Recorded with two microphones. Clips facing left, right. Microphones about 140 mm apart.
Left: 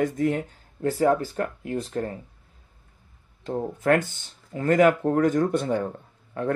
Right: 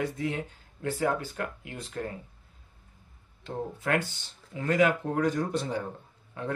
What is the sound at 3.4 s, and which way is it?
Speech, 45° left (ahead or behind).